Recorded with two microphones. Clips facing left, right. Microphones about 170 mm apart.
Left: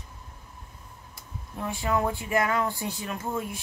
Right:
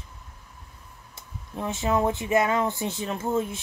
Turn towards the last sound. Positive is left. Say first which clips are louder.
# right 5 dB
turn(degrees=-25)  # may be behind; listen again after turning